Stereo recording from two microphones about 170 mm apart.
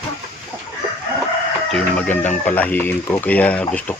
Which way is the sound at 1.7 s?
5° left (ahead or behind).